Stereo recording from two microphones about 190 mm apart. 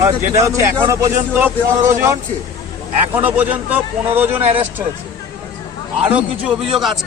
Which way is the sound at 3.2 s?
10° right (ahead or behind).